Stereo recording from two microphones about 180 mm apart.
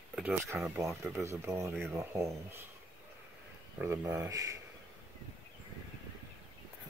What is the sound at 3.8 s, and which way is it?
Speech, 10° right (ahead or behind).